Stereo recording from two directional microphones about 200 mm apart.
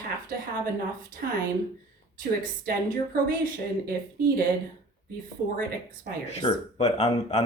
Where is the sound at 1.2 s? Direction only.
50° right (ahead or behind).